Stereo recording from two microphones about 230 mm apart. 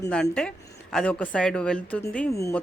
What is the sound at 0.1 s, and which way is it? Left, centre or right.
A woman's voice, centre.